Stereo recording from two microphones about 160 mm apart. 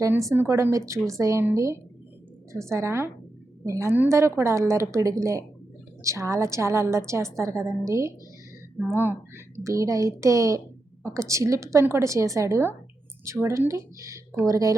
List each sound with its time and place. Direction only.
0.0 s a woman's voice: 20° right (ahead or behind)